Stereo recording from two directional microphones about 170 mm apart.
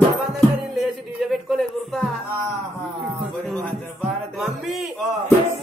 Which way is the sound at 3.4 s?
5° left (ahead or behind).